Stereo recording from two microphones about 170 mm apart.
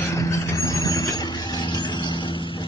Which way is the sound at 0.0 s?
20° left (ahead or behind).